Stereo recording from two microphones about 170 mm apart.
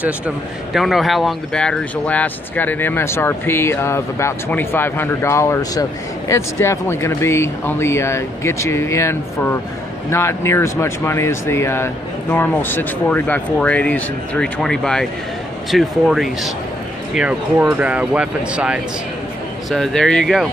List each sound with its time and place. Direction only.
0.7 s speech: centre (ahead or behind)